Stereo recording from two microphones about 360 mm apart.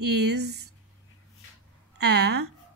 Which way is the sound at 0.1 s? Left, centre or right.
Right.